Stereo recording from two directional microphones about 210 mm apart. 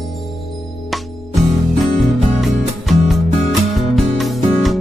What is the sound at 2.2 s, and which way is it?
Music, centre (ahead or behind).